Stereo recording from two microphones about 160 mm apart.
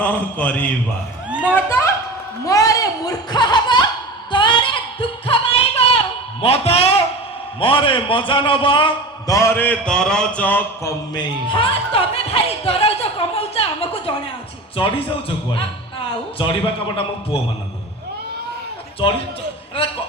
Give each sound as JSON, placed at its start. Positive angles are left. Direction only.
{"t": 0.0, "sound": "a man's voice", "side_deg": 10}
{"t": 1.3, "sound": "speech", "side_deg": -5}
{"t": 1.5, "sound": "a man's voice", "side_deg": 15}
{"t": 2.4, "sound": "a sound", "side_deg": 20}
{"t": 6.4, "sound": "a man's voice", "side_deg": 40}
{"t": 11.1, "sound": "speech", "side_deg": 30}
{"t": 19.0, "sound": "speech", "side_deg": 30}